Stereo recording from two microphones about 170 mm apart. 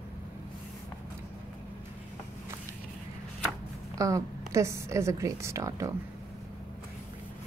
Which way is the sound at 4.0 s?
20° right (ahead or behind).